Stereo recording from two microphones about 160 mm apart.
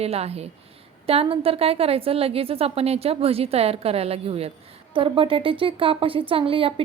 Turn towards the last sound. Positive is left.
turn(degrees=-35)  # may be behind; listen again after turning